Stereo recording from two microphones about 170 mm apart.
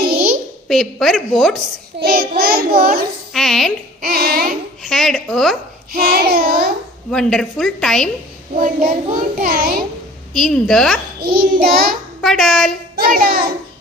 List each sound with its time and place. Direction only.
0.7 s a woman's voice: centre (ahead or behind)
2.0 s a child's voice: 65° right (ahead or behind)
3.3 s a woman's voice: centre (ahead or behind)
4.0 s a child's voice: 60° right (ahead or behind)
4.8 s a woman's voice: centre (ahead or behind)
5.9 s a child's voice: 65° right (ahead or behind)
7.1 s a woman's voice: 5° left (ahead or behind)
8.5 s a child's voice: 55° right (ahead or behind)
10.3 s a woman's voice: centre (ahead or behind)
11.1 s a child's voice: 60° right (ahead or behind)
12.2 s a woman's voice: centre (ahead or behind)
12.9 s a child's voice: 60° right (ahead or behind)